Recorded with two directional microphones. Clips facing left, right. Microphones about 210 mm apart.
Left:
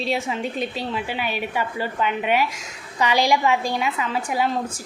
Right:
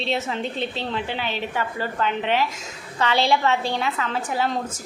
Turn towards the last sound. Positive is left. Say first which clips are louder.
# left 1 dB
turn(degrees=10)  # may be behind; listen again after turning